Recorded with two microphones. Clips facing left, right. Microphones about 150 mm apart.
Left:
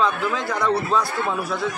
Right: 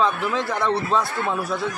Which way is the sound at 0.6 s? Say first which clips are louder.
Left 2 dB; 25° right (ahead or behind).